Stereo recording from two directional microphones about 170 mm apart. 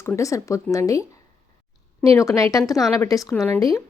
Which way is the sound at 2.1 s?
20° left (ahead or behind).